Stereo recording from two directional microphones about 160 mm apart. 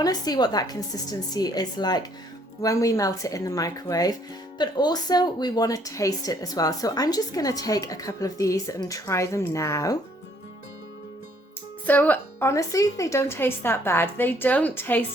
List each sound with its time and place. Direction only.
0.0 s speech: 25° left (ahead or behind)
11.9 s a woman's voice: 10° left (ahead or behind)